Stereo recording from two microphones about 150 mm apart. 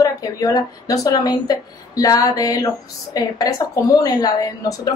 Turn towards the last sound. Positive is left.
turn(degrees=25)  # may be behind; listen again after turning